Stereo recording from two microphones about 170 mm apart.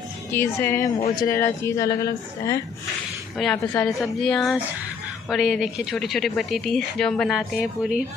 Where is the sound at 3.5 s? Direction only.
10° left (ahead or behind).